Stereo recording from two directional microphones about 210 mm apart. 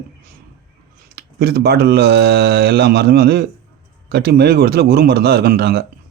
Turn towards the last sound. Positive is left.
turn(degrees=-50)  # may be behind; listen again after turning